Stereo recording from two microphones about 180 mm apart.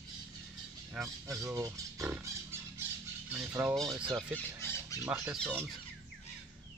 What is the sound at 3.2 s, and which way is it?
Speech, 10° right (ahead or behind).